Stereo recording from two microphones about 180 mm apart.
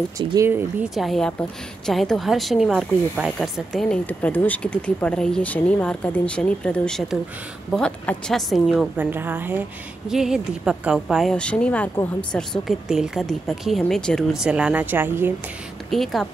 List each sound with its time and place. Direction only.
0.2 s speech: 25° right (ahead or behind)
0.5 s a woman's voice: 5° right (ahead or behind)
15.9 s a woman's voice: centre (ahead or behind)